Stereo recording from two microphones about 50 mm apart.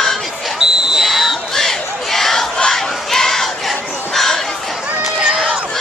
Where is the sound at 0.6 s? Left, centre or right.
Centre.